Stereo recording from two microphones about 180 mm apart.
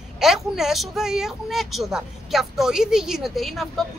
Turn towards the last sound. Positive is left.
turn(degrees=0)  # may be behind; listen again after turning